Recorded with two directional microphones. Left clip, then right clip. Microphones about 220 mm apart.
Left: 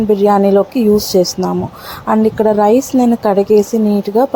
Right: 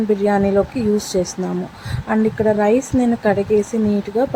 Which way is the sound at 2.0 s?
15° left (ahead or behind).